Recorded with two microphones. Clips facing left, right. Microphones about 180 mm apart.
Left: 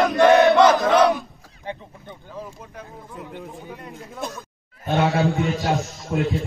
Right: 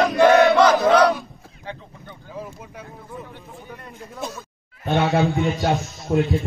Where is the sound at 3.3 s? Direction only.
15° left (ahead or behind).